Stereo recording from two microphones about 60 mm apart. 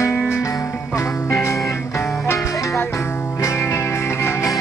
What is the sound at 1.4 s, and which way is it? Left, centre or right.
Music, left.